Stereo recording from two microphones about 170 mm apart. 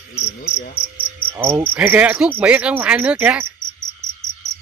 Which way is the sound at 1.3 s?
15° right (ahead or behind).